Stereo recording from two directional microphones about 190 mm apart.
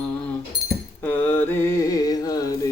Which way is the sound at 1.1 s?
10° left (ahead or behind).